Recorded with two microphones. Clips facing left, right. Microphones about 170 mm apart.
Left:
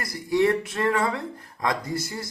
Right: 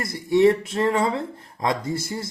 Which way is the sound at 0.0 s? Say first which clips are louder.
Right 5 dB; 25° right (ahead or behind).